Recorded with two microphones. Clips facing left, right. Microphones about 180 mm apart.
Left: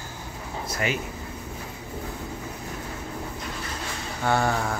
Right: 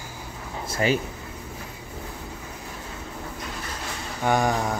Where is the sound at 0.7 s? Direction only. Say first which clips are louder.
Right 5 dB; 30° right (ahead or behind).